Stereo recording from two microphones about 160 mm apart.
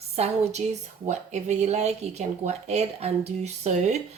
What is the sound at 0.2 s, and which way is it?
Speech, 40° right (ahead or behind).